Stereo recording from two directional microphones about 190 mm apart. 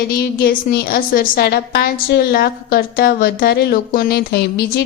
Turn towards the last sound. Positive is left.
turn(degrees=55)  # may be behind; listen again after turning